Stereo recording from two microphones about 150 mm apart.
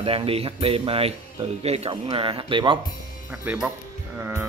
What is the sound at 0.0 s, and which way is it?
Speech, 40° right (ahead or behind).